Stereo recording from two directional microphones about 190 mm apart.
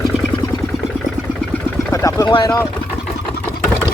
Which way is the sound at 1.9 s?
20° left (ahead or behind).